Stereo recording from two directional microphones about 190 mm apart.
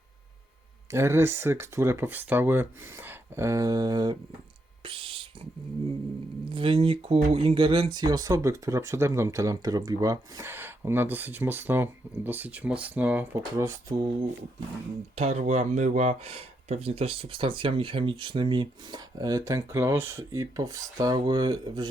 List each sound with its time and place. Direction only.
0.9 s speech: 15° right (ahead or behind)
4.8 s a sound: 30° right (ahead or behind)
6.5 s speech: 30° right (ahead or behind)
15.1 s speech: 35° right (ahead or behind)